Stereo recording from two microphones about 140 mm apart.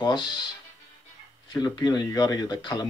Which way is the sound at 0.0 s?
30° left (ahead or behind).